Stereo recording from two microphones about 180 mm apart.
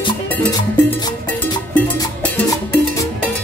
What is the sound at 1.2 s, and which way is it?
Cowbell, 10° left (ahead or behind).